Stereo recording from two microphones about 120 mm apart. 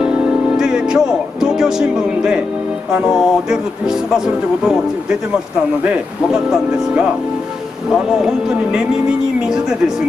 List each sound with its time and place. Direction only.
0.0 s speech: 5° right (ahead or behind)
2.9 s music: 5° right (ahead or behind)
5.9 s speech: 5° right (ahead or behind)